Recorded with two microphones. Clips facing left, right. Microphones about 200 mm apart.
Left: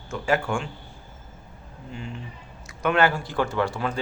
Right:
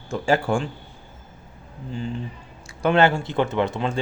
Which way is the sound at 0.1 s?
35° right (ahead or behind).